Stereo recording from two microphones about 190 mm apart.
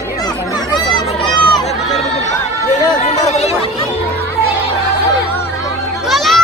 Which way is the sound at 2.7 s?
40° left (ahead or behind).